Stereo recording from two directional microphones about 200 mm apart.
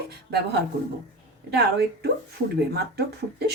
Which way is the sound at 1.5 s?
55° right (ahead or behind).